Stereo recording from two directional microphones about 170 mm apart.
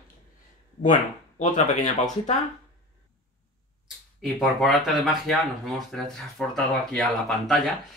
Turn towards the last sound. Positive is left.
turn(degrees=0)  # may be behind; listen again after turning